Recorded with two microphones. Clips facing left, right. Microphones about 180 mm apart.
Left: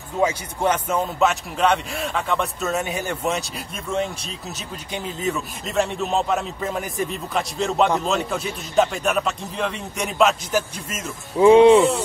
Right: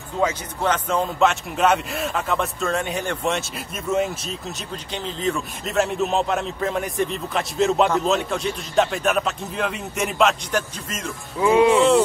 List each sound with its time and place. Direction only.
0.2 s a man's voice: 10° left (ahead or behind)
4.9 s a man's voice: 10° left (ahead or behind)
11.3 s speech: 30° left (ahead or behind)